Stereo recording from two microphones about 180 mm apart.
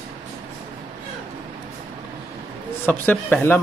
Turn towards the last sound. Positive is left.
turn(degrees=10)  # may be behind; listen again after turning